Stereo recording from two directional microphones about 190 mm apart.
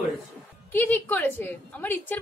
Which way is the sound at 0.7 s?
10° left (ahead or behind).